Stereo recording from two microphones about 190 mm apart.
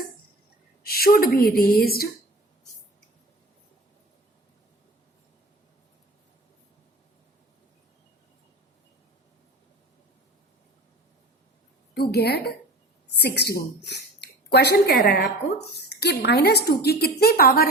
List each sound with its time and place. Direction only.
0.8 s a woman's voice: 50° left (ahead or behind)
11.9 s a woman's voice: 55° left (ahead or behind)